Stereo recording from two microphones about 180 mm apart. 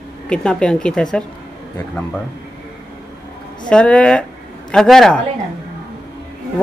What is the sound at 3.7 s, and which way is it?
Speech, 5° left (ahead or behind).